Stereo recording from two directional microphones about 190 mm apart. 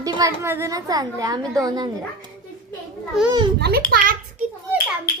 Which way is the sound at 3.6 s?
60° right (ahead or behind).